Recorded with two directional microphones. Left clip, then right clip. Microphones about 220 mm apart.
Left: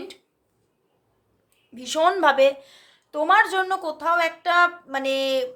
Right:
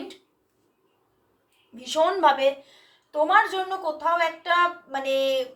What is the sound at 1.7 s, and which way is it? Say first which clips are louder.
A woman's voice: left 2 dB; 50° left (ahead or behind).